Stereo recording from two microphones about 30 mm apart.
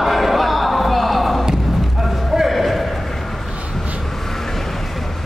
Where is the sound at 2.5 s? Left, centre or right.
Centre.